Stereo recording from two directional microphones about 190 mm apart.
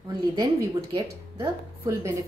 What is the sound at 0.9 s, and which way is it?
Speech, 15° right (ahead or behind).